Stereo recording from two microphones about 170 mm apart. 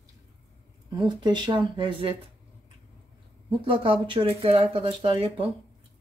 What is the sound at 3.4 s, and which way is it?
Speech, 30° right (ahead or behind).